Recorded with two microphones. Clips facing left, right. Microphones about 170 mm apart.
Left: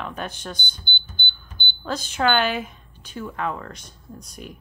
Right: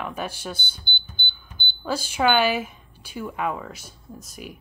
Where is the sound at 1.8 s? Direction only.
10° right (ahead or behind).